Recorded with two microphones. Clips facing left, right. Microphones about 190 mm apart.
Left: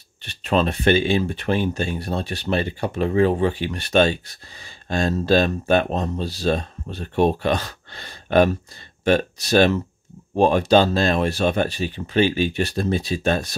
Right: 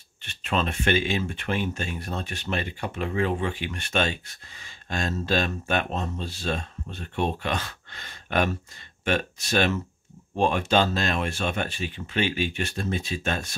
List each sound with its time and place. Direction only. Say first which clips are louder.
0.2 s speech: left 7 dB; 35° left (ahead or behind)